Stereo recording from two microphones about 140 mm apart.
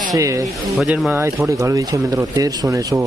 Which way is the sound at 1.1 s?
20° right (ahead or behind).